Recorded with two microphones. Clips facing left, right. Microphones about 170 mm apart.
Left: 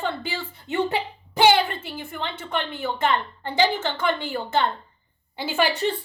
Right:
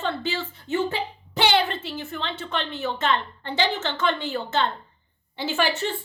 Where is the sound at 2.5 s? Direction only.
55° left (ahead or behind).